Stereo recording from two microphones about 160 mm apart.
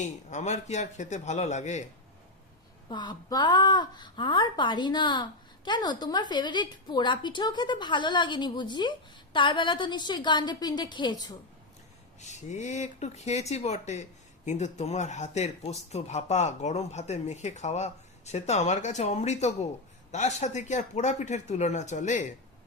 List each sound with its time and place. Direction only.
0.3 s speech: 50° left (ahead or behind)
2.9 s speech: 25° left (ahead or behind)
12.2 s speech: 45° left (ahead or behind)